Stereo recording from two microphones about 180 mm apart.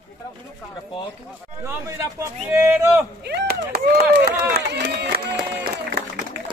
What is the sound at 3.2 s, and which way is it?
Speech, 65° right (ahead or behind).